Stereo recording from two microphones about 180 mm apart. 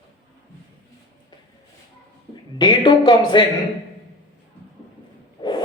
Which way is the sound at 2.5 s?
25° left (ahead or behind).